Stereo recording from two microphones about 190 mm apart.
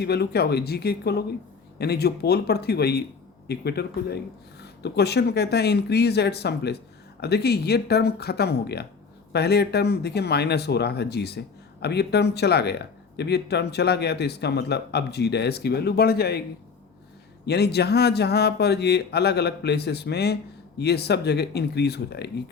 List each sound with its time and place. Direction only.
0.0 s speech: 60° left (ahead or behind)
17.4 s speech: 60° left (ahead or behind)